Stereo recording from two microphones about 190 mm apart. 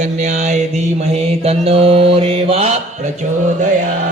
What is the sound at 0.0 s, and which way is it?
Mantra, 40° right (ahead or behind).